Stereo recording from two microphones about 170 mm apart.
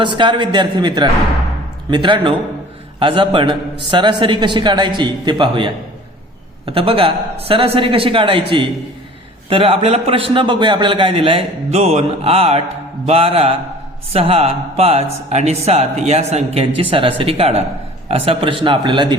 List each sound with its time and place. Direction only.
0.0 s a man's voice: 30° right (ahead or behind)